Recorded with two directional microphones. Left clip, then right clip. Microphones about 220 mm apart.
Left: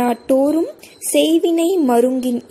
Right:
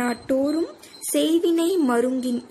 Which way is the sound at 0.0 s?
20° left (ahead or behind).